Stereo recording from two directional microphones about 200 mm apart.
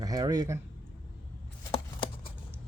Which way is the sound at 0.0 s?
20° right (ahead or behind).